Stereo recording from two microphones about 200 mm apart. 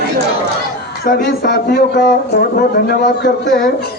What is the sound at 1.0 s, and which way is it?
A man's voice, 50° left (ahead or behind).